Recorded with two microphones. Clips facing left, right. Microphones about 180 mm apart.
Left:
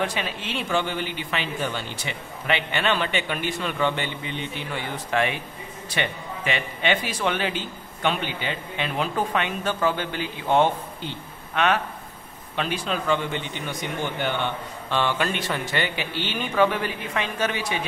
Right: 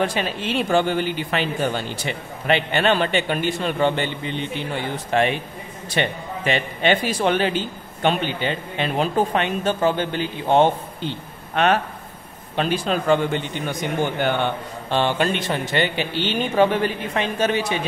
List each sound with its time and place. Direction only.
0.0 s a man's voice: 35° right (ahead or behind)
11.5 s a man's voice: 40° right (ahead or behind)
14.9 s speech: 30° right (ahead or behind)